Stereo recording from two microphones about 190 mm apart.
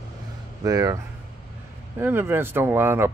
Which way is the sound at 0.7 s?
20° right (ahead or behind).